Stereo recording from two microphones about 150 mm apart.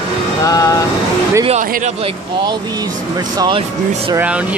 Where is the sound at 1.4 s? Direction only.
50° right (ahead or behind).